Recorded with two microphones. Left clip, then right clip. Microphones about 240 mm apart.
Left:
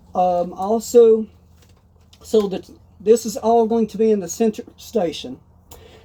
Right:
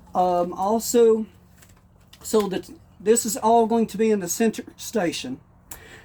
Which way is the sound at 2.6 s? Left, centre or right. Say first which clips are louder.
Left 3 dB; right.